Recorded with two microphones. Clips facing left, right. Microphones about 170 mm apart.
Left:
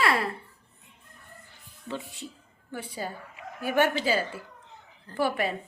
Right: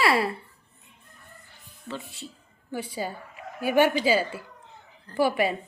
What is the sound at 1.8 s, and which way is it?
Speech, 15° left (ahead or behind).